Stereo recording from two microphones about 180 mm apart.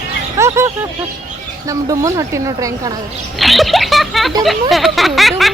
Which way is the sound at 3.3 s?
Centre (ahead or behind).